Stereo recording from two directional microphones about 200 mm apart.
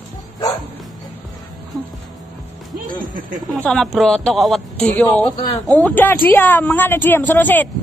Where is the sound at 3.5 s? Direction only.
Centre (ahead or behind).